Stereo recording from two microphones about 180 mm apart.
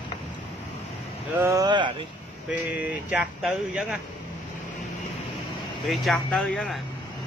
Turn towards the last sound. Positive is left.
turn(degrees=5)  # may be behind; listen again after turning